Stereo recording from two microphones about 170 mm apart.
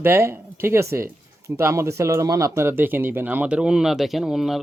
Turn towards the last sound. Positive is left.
turn(degrees=0)  # may be behind; listen again after turning